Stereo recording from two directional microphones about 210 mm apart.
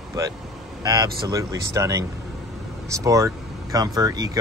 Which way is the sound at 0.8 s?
15° right (ahead or behind).